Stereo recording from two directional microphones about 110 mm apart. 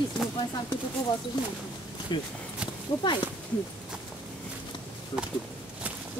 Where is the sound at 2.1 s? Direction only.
45° left (ahead or behind).